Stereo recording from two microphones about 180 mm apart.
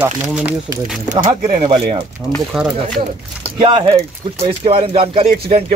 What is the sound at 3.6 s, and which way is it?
Speech, 30° right (ahead or behind).